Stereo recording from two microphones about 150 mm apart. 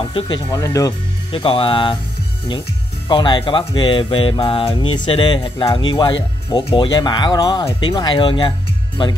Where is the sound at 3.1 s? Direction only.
30° left (ahead or behind).